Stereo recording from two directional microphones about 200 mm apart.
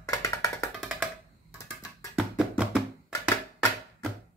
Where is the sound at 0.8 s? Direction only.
5° right (ahead or behind).